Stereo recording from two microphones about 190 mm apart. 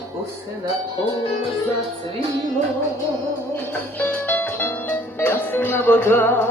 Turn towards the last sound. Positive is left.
turn(degrees=10)  # may be behind; listen again after turning